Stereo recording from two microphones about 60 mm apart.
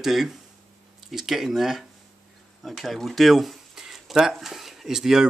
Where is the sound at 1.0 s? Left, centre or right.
Centre.